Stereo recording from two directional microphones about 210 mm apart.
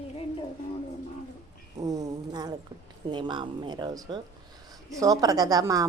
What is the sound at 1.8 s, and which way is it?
A woman's voice, 15° right (ahead or behind).